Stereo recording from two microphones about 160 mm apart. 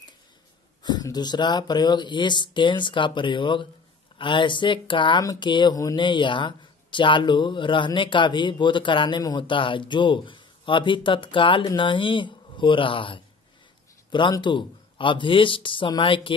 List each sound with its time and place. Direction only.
0.8 s speech: 25° left (ahead or behind)